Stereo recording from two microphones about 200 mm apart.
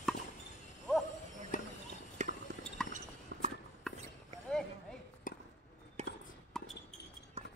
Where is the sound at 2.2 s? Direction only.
35° right (ahead or behind).